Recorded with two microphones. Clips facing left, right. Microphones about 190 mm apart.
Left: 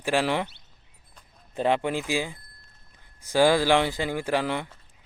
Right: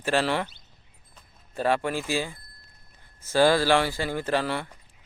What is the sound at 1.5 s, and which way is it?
Speech, 20° left (ahead or behind).